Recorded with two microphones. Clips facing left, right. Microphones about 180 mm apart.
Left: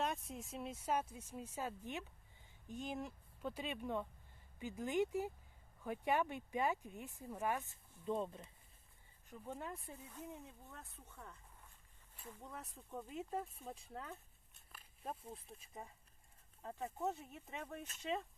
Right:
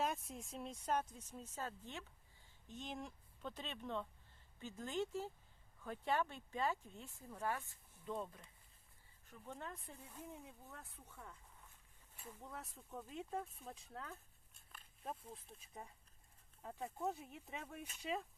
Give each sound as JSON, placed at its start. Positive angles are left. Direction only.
{"t": 0.0, "sound": "speech", "side_deg": 0}
{"t": 9.2, "sound": "speech", "side_deg": 15}
{"t": 10.1, "sound": "speech", "side_deg": -5}